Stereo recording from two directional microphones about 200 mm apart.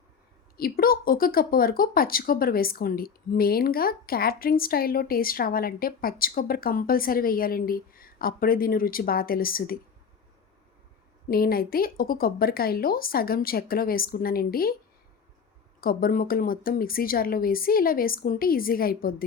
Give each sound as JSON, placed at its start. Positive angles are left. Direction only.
{"t": 0.5, "sound": "speech", "side_deg": 50}
{"t": 11.3, "sound": "speech", "side_deg": 50}
{"t": 15.8, "sound": "speech", "side_deg": 45}